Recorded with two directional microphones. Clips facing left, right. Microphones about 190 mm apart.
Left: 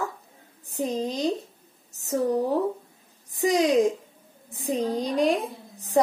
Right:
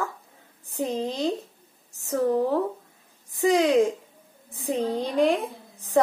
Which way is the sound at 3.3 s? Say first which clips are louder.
Right 1 dB; 15° left (ahead or behind).